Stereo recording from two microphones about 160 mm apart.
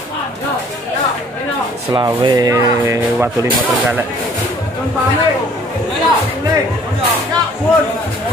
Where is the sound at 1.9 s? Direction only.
25° right (ahead or behind).